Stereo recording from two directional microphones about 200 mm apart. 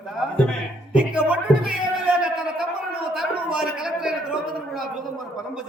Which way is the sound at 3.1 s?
5° right (ahead or behind).